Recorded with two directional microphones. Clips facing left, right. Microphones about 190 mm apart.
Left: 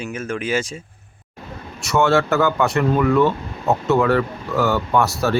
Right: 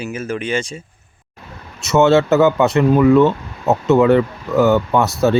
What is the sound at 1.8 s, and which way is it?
Speech, 20° right (ahead or behind).